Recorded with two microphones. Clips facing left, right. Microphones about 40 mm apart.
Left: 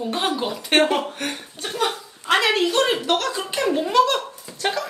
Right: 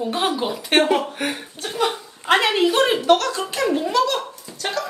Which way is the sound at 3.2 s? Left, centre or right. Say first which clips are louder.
Right 1 dB; centre.